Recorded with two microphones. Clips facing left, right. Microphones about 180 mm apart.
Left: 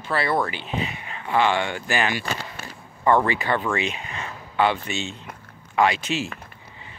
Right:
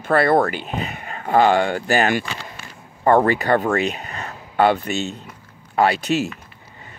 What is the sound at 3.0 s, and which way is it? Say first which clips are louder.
Speech: right 4 dB; 45° right (ahead or behind).